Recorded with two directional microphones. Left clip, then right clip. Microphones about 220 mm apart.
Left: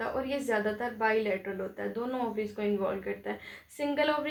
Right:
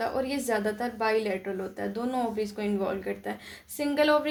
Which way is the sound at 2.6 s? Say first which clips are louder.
Left 4 dB; 50° right (ahead or behind).